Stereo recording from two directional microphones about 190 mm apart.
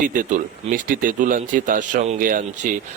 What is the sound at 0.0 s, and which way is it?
Speech, 45° right (ahead or behind).